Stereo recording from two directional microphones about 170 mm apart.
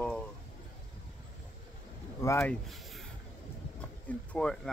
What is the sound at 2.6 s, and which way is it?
Speech, centre (ahead or behind).